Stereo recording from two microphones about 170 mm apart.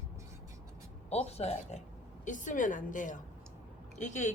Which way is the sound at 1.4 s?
40° left (ahead or behind).